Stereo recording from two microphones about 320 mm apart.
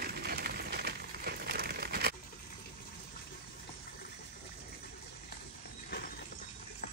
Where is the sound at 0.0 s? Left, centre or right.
Right.